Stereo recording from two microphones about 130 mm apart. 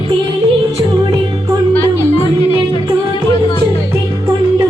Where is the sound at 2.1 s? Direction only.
45° left (ahead or behind).